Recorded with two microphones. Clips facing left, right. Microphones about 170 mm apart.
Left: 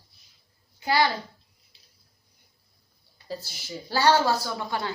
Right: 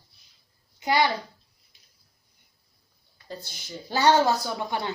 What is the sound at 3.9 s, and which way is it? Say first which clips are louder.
A woman's voice: right 1 dB; 20° right (ahead or behind).